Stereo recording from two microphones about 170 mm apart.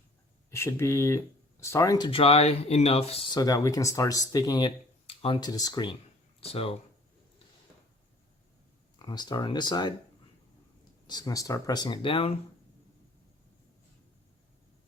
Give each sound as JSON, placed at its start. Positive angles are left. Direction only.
{"t": 0.5, "sound": "speech", "side_deg": 15}
{"t": 3.3, "sound": "speech", "side_deg": 20}
{"t": 9.0, "sound": "speech", "side_deg": 25}
{"t": 11.0, "sound": "speech", "side_deg": 25}